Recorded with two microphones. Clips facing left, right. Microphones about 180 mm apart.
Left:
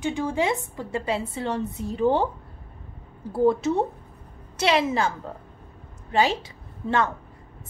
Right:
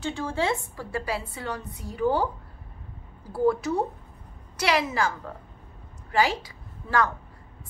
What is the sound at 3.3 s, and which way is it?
A woman's voice, 25° left (ahead or behind).